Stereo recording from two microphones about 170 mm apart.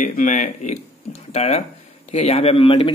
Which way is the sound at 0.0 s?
50° left (ahead or behind).